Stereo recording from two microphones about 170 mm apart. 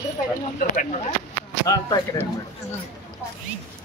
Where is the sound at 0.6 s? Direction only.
50° left (ahead or behind).